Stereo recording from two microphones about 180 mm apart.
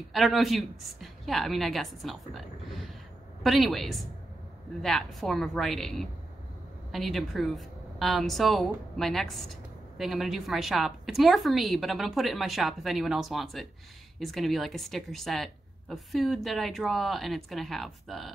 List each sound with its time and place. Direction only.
0.1 s a woman's voice: centre (ahead or behind)